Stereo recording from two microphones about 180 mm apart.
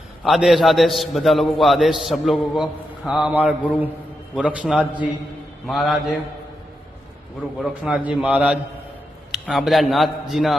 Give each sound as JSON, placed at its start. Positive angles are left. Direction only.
{"t": 0.3, "sound": "a man's voice", "side_deg": 0}
{"t": 7.6, "sound": "a man's voice", "side_deg": -5}